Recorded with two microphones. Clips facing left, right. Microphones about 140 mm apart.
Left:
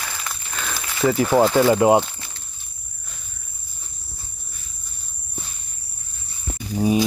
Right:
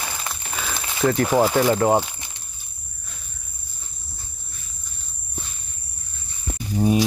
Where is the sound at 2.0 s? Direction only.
15° right (ahead or behind).